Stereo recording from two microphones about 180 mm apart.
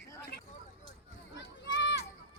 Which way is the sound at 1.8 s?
80° left.